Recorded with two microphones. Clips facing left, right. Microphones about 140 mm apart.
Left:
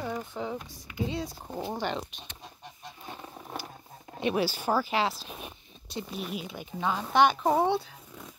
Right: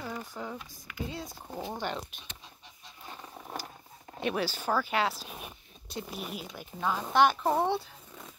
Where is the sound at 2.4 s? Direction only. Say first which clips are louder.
Left 8 dB; 55° left (ahead or behind).